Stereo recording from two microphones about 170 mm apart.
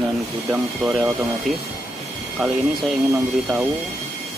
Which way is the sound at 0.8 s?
Centre (ahead or behind).